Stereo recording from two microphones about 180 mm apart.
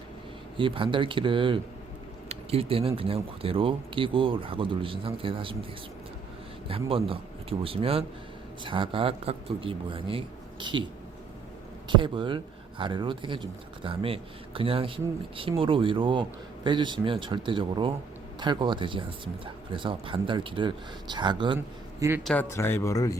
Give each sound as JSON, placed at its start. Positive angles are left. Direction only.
{"t": 0.5, "sound": "speech", "side_deg": -30}
{"t": 6.7, "sound": "speech", "side_deg": -30}
{"t": 11.9, "sound": "speech", "side_deg": -25}
{"t": 22.2, "sound": "speech", "side_deg": 5}
{"t": 22.4, "sound": "speech", "side_deg": 15}